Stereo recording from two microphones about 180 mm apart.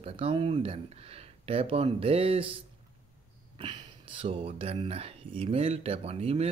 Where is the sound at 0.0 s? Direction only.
30° right (ahead or behind).